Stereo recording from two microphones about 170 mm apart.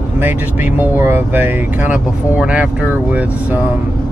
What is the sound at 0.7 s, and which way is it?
Speech, 10° right (ahead or behind).